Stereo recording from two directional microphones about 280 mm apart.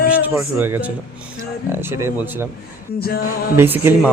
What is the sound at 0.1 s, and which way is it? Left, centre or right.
A man's voice, centre.